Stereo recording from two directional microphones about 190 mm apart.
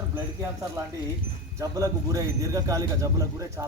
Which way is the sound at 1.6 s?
20° right (ahead or behind).